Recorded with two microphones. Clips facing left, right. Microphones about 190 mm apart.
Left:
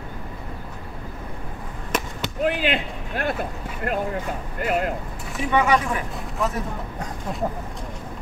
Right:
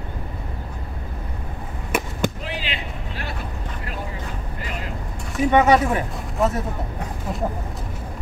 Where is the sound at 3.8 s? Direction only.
55° left (ahead or behind).